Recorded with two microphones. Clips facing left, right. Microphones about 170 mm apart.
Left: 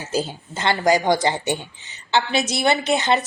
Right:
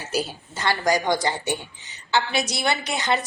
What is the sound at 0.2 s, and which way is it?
A woman's voice, 20° left (ahead or behind).